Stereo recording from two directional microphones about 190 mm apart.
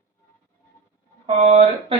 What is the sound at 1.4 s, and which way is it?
Speech, 30° right (ahead or behind).